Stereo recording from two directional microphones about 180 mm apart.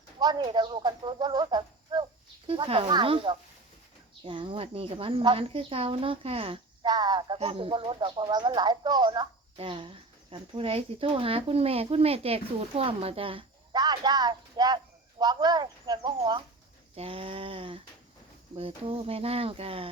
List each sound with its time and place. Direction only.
0.2 s speech: 25° right (ahead or behind)